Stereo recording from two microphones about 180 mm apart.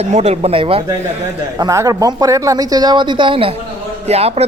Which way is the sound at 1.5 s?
20° right (ahead or behind).